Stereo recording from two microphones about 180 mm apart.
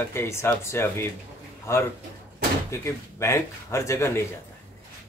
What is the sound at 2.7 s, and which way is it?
Speech, 15° left (ahead or behind).